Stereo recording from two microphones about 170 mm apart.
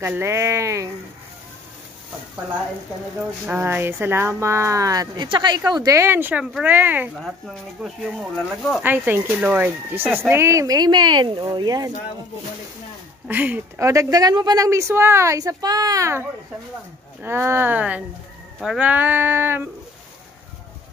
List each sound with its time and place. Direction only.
0.0 s speech: 15° right (ahead or behind)
3.4 s speech: 10° right (ahead or behind)
8.8 s speech: 10° right (ahead or behind)
13.3 s speech: 10° right (ahead or behind)